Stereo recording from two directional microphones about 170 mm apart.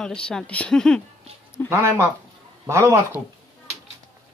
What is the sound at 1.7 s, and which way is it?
Speech, 15° right (ahead or behind).